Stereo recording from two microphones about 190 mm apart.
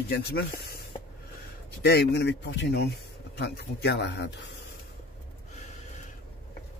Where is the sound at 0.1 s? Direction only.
55° left (ahead or behind).